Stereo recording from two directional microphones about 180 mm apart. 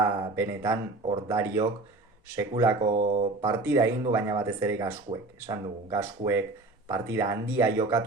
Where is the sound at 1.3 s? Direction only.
15° right (ahead or behind).